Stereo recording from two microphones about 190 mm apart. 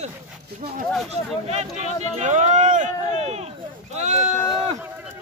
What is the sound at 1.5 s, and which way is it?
Speech, 35° right (ahead or behind).